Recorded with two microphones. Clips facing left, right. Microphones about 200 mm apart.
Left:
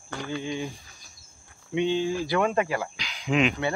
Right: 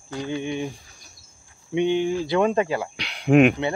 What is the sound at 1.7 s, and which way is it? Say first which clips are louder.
Speech: right 4 dB; 20° right (ahead or behind).